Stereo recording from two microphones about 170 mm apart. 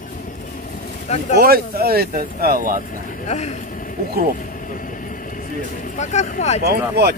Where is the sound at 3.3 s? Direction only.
40° left (ahead or behind).